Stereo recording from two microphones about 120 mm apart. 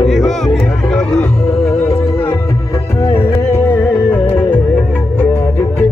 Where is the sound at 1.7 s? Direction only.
25° left (ahead or behind).